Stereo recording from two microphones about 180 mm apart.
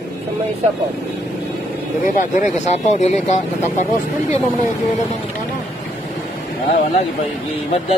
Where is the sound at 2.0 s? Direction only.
40° left (ahead or behind).